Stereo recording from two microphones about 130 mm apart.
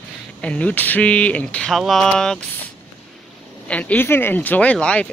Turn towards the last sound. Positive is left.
turn(degrees=10)  # may be behind; listen again after turning